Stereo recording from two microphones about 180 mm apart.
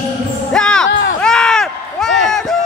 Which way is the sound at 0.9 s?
90° left.